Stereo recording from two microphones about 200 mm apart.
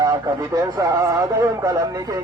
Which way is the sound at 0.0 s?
20° right (ahead or behind).